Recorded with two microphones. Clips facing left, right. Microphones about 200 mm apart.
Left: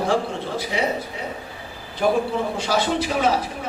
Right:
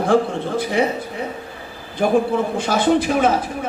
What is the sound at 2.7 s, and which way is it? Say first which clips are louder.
Speech: right 6 dB; 50° right (ahead or behind).